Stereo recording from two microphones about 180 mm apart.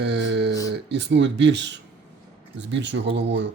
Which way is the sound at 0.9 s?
75° right (ahead or behind).